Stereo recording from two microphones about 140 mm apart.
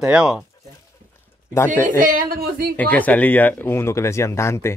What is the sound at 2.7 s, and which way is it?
Speech, 10° left (ahead or behind).